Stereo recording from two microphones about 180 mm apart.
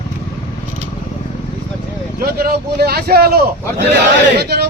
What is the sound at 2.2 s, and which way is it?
Speech, 60° right (ahead or behind).